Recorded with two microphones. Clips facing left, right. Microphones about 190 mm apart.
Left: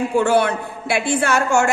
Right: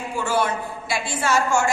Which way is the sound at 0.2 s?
60° left (ahead or behind).